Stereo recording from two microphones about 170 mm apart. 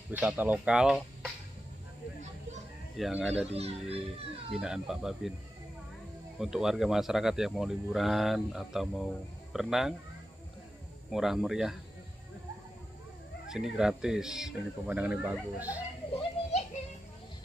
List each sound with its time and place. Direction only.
0.1 s speech: 10° right (ahead or behind)
3.0 s speech: centre (ahead or behind)
3.3 s a child's voice: 35° right (ahead or behind)
4.0 s speech: centre (ahead or behind)
6.4 s speech: 5° right (ahead or behind)
11.1 s speech: centre (ahead or behind)
13.5 s speech: 5° right (ahead or behind)
16.1 s children playing: 35° left (ahead or behind)